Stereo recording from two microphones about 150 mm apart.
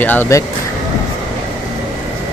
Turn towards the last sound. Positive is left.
turn(degrees=15)  # may be behind; listen again after turning